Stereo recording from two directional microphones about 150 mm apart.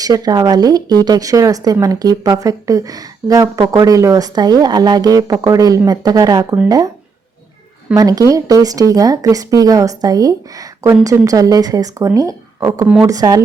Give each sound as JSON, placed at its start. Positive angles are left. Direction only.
{"t": 0.0, "sound": "speech", "side_deg": -25}
{"t": 7.9, "sound": "speech", "side_deg": -25}